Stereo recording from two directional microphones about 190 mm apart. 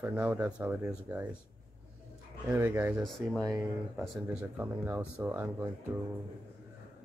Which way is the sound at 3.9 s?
5° right (ahead or behind).